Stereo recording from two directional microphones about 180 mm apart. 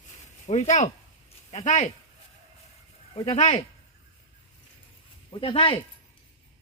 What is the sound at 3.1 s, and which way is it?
Speech, 40° left (ahead or behind).